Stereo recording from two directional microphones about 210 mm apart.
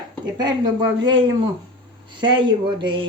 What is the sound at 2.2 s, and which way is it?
Speech, 20° right (ahead or behind).